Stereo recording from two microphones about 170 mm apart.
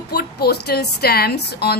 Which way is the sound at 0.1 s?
65° left (ahead or behind).